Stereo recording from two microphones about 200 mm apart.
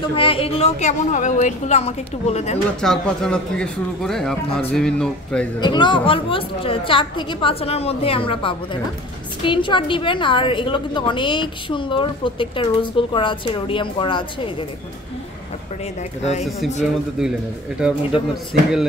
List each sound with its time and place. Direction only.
0.0 s a woman's voice: 25° left (ahead or behind)
2.8 s speech: 5° left (ahead or behind)
5.6 s a woman's voice: 20° left (ahead or behind)
16.2 s a woman's voice: 35° left (ahead or behind)
16.8 s speech: 5° right (ahead or behind)